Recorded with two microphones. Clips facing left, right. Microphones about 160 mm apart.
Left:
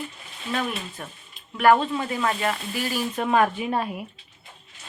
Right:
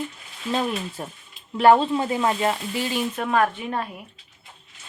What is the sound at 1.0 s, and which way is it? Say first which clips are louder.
A woman's voice: right 4 dB; 30° right (ahead or behind).